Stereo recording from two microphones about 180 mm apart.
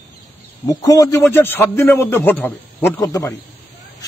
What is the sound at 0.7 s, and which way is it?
A man's voice, 20° left (ahead or behind).